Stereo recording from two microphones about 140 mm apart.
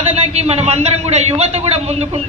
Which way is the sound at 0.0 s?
50° right (ahead or behind).